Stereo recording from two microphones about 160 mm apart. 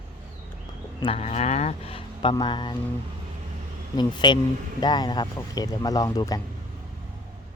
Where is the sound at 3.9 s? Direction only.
30° left (ahead or behind).